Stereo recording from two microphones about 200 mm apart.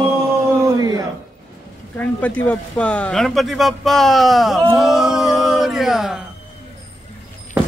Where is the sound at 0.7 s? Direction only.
15° right (ahead or behind).